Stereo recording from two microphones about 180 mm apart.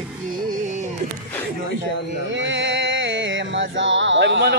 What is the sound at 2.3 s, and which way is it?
Music, 90° right.